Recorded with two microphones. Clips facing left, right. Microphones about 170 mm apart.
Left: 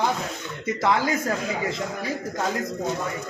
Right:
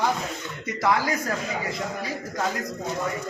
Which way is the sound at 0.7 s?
25° left (ahead or behind).